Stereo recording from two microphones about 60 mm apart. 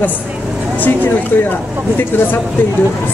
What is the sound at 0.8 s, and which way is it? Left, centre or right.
Speech, left.